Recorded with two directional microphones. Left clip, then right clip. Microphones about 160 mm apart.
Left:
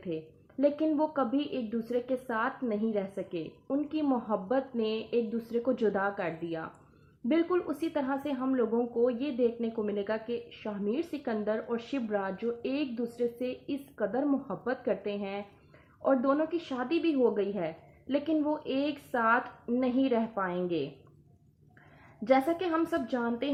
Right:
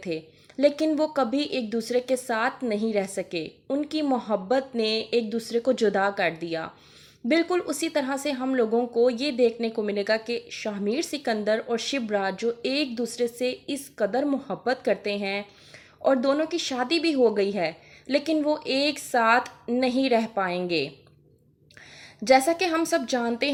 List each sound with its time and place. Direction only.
0.6 s a woman's voice: 30° right (ahead or behind)
22.2 s speech: 30° right (ahead or behind)